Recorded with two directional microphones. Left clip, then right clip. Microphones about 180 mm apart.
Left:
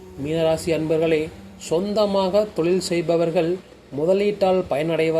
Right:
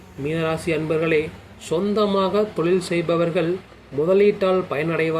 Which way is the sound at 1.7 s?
85° left.